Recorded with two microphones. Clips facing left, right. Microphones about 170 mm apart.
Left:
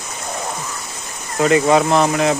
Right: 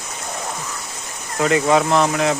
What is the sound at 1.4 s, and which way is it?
Speech, 30° left (ahead or behind).